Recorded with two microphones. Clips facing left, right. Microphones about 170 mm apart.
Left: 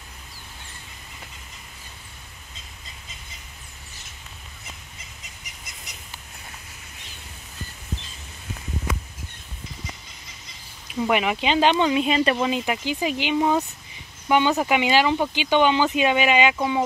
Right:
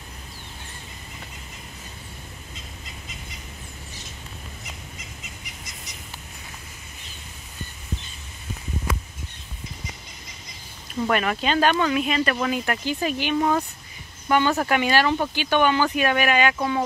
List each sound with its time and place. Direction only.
10.9 s speech: 10° left (ahead or behind)